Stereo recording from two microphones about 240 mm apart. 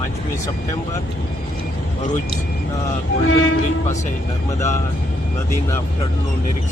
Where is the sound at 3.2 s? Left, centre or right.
Left.